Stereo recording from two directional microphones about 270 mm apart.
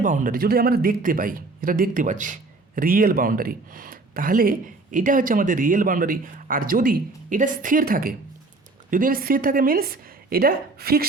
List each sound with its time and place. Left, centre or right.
0.0 s a man's voice: right